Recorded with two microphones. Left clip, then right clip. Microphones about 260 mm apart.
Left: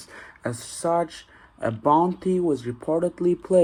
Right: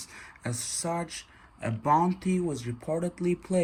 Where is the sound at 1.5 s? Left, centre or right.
Centre.